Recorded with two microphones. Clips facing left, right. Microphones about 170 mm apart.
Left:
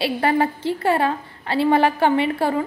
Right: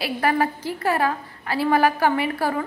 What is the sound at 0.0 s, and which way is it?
A woman's voice, 25° left (ahead or behind).